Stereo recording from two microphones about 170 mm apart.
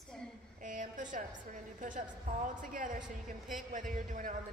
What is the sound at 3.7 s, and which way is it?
Speech, 50° right (ahead or behind).